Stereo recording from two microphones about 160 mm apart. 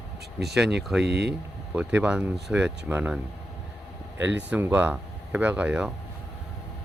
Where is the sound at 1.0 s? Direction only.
90° right.